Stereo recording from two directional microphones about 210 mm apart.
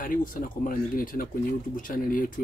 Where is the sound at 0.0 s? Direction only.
40° left (ahead or behind).